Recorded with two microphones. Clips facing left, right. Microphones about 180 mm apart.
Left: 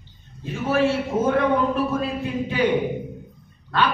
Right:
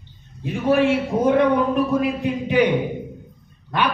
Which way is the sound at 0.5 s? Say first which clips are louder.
Right 3 dB; 15° right (ahead or behind).